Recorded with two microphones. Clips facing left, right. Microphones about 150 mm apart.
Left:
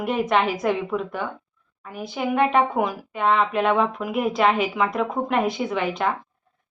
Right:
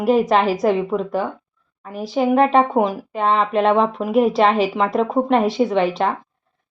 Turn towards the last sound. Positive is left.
turn(degrees=-35)  # may be behind; listen again after turning